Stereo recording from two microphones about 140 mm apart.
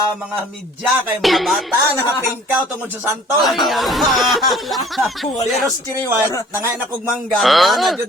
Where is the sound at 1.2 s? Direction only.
Centre (ahead or behind).